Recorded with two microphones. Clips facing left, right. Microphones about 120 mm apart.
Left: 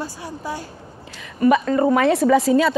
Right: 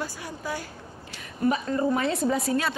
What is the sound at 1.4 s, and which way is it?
A woman's voice, 85° left.